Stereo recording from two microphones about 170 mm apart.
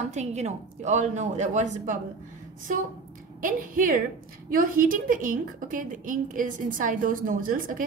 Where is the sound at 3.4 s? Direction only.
50° right (ahead or behind).